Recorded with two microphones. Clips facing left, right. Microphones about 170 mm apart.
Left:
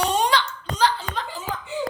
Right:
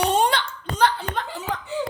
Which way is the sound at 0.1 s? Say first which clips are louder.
Right 1 dB; 55° right (ahead or behind).